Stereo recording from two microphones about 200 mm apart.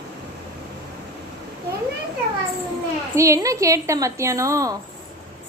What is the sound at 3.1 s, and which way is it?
A woman's voice, 15° right (ahead or behind).